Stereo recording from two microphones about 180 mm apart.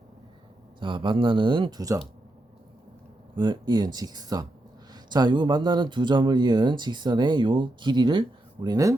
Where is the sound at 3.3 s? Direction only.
25° right (ahead or behind).